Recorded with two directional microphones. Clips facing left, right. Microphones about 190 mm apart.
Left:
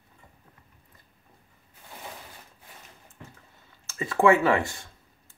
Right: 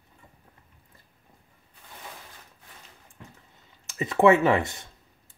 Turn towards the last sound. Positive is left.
turn(degrees=-20)  # may be behind; listen again after turning